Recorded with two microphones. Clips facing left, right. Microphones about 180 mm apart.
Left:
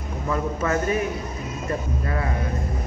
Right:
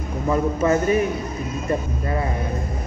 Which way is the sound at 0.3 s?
20° right (ahead or behind).